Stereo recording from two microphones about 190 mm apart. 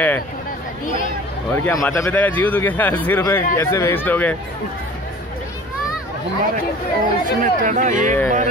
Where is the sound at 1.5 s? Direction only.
10° left (ahead or behind).